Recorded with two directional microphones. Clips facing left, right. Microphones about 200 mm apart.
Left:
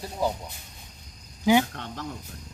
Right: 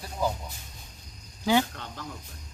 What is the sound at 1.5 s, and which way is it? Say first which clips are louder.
Speech: left 3 dB; 15° left (ahead or behind).